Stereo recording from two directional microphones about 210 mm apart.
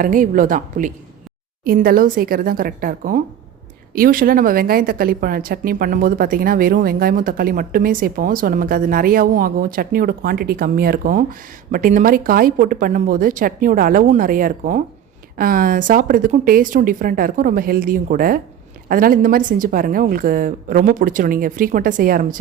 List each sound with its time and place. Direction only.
0.0 s a woman's voice: 40° right (ahead or behind)